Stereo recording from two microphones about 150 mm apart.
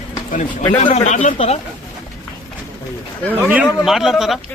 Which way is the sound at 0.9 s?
50° left (ahead or behind).